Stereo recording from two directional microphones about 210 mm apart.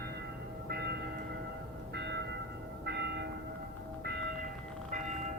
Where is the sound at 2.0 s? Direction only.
55° right (ahead or behind).